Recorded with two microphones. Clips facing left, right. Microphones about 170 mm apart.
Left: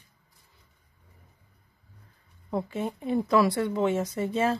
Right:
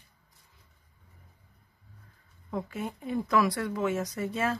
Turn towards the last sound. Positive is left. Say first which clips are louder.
# left 4 dB
turn(degrees=25)  # may be behind; listen again after turning